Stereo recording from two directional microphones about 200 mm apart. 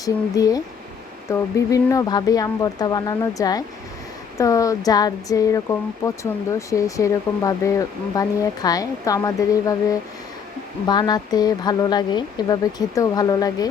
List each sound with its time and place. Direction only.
0.0 s speech: 15° left (ahead or behind)